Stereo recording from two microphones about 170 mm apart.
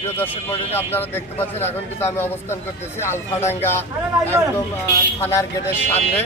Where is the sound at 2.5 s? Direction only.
15° left (ahead or behind).